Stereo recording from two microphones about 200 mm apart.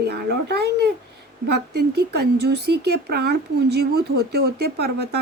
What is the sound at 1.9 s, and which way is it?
Speech, 55° right (ahead or behind).